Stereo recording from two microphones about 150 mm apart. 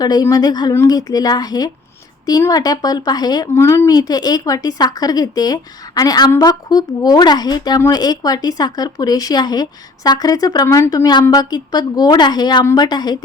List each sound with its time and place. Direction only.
0.0 s speech: 25° left (ahead or behind)